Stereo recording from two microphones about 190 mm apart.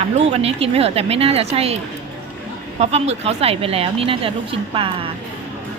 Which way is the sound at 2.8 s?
35° right (ahead or behind).